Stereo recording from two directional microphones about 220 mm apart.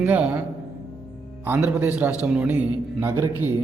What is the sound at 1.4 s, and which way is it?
A man's voice, 10° right (ahead or behind).